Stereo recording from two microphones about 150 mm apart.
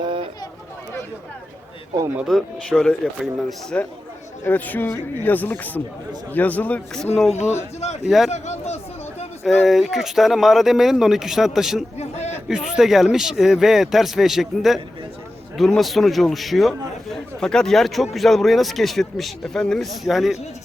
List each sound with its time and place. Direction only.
0.0 s a sound: 35° right (ahead or behind)
2.0 s speech: 15° right (ahead or behind)
2.2 s a man's voice: 5° left (ahead or behind)
8.3 s speech: 50° left (ahead or behind)
9.4 s a man's voice: centre (ahead or behind)
11.9 s a sound: 45° left (ahead or behind)
12.5 s a man's voice: 5° right (ahead or behind)